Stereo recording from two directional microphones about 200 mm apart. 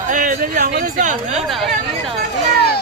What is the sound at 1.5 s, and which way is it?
Speech, centre (ahead or behind).